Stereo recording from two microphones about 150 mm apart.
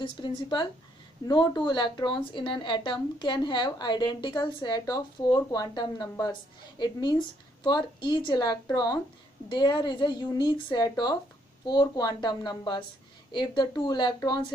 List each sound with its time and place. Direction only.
0.0 s a woman's voice: 30° left (ahead or behind)